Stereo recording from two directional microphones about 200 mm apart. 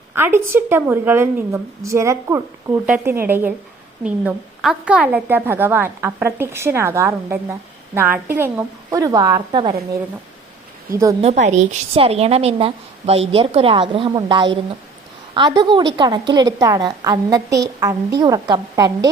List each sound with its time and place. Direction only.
0.1 s a woman's voice: 10° right (ahead or behind)
11.2 s a woman's voice: 35° right (ahead or behind)